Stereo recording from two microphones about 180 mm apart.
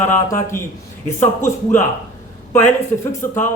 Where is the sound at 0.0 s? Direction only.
15° left (ahead or behind).